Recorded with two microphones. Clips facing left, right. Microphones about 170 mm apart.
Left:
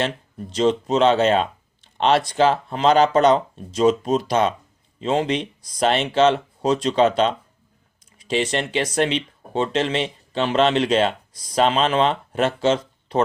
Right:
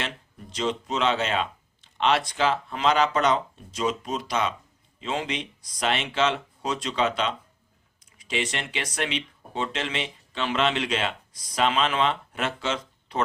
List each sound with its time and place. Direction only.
0.5 s speech: 30° left (ahead or behind)